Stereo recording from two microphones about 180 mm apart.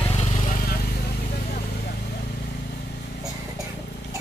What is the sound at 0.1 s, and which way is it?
Vehicle, 35° left (ahead or behind).